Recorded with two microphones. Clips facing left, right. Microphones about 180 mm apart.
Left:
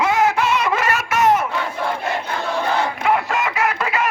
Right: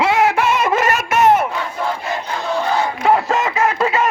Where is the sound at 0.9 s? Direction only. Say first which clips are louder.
Right 3 dB; 25° right (ahead or behind).